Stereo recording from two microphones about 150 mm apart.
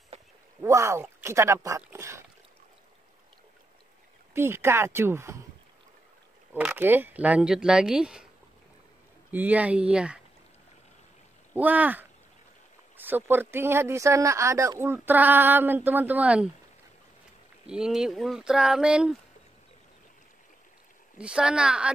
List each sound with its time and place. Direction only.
0.6 s speech: 20° right (ahead or behind)
4.3 s speech: 15° right (ahead or behind)
6.5 s speech: 15° right (ahead or behind)
9.3 s speech: 10° right (ahead or behind)
11.5 s speech: 10° right (ahead or behind)
17.6 s speech: 5° right (ahead or behind)
21.2 s speech: 5° right (ahead or behind)